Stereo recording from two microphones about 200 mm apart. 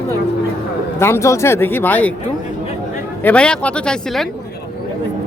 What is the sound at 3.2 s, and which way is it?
Speech, 5° left (ahead or behind).